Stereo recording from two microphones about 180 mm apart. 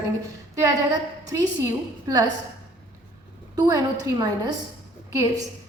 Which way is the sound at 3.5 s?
20° right (ahead or behind).